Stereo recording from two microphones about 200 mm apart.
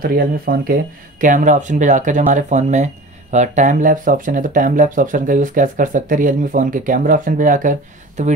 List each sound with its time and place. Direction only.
0.0 s speech: 50° right (ahead or behind)